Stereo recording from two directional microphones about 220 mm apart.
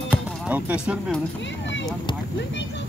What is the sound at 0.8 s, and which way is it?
Speech, 5° right (ahead or behind).